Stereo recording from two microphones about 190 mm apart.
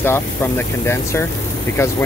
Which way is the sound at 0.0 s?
15° left (ahead or behind).